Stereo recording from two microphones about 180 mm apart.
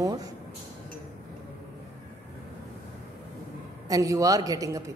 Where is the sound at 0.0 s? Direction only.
20° right (ahead or behind).